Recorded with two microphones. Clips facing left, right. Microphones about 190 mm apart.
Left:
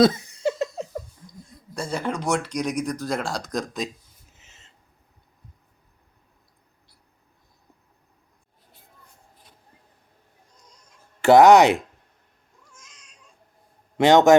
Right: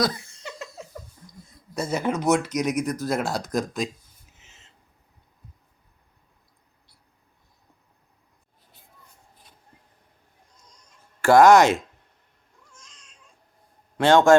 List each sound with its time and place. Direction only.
0.0 s laughter: 25° left (ahead or behind)
1.7 s speech: 10° right (ahead or behind)
11.2 s speech: 20° left (ahead or behind)
14.0 s speech: 20° left (ahead or behind)